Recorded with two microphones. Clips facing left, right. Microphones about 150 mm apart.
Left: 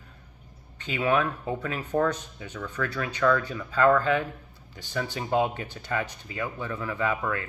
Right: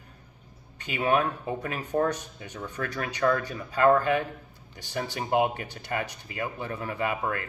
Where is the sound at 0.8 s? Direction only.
20° right (ahead or behind).